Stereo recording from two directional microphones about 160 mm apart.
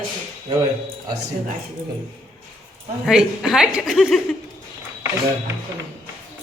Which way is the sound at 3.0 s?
Centre (ahead or behind).